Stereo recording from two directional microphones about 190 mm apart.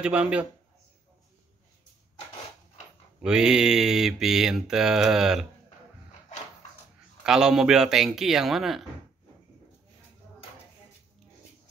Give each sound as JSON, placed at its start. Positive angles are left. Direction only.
{"t": 0.0, "sound": "mantra", "side_deg": -5}
{"t": 3.2, "sound": "mantra", "side_deg": -5}
{"t": 7.2, "sound": "mantra", "side_deg": -5}